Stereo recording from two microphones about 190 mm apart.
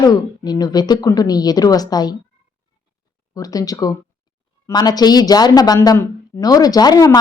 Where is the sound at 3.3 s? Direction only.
20° left (ahead or behind).